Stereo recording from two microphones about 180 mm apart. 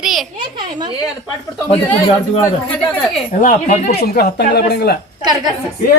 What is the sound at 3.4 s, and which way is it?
Speech, 40° left (ahead or behind).